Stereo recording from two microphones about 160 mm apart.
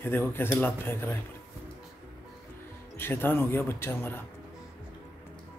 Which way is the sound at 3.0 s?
15° left (ahead or behind).